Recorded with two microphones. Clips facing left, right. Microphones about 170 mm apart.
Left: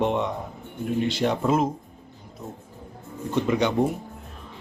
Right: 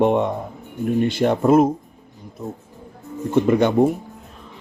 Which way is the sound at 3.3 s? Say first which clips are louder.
Right 6 dB; 50° right (ahead or behind).